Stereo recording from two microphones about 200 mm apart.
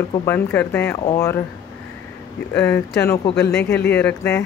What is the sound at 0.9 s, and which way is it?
Speech, 20° left (ahead or behind).